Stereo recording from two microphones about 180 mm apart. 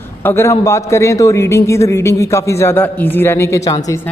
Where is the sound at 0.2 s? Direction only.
10° left (ahead or behind).